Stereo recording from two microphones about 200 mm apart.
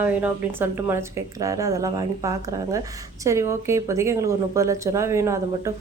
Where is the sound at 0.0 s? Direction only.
10° right (ahead or behind).